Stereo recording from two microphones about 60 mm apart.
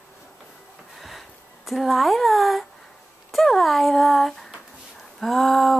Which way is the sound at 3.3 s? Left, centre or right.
Centre.